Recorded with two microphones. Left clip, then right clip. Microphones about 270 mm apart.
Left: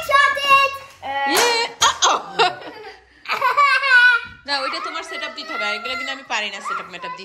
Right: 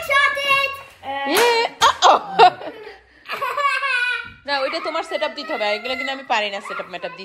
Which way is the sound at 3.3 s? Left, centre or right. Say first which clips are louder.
Left 5 dB; left.